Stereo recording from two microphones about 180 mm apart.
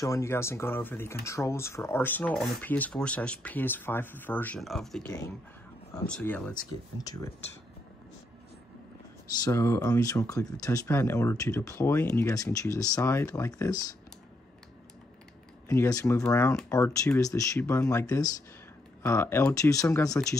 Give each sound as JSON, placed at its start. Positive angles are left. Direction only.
{"t": 0.0, "sound": "speech", "side_deg": 15}
{"t": 7.0, "sound": "speech", "side_deg": 20}
{"t": 9.4, "sound": "speech", "side_deg": 15}
{"t": 15.7, "sound": "speech", "side_deg": 15}